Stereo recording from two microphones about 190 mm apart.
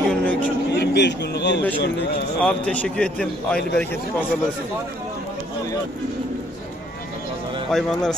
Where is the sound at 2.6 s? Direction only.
5° left (ahead or behind).